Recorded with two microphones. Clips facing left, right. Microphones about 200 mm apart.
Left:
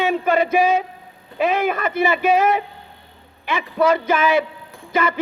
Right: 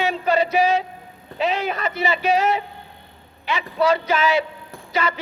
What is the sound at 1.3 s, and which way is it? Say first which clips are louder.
A man's voice: left 4 dB; 50° left (ahead or behind).